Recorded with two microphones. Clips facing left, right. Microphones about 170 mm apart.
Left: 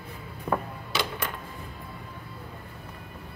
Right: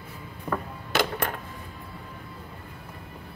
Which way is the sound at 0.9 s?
50° right (ahead or behind).